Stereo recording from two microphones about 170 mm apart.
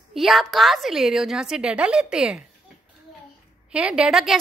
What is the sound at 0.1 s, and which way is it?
A woman's voice, centre (ahead or behind).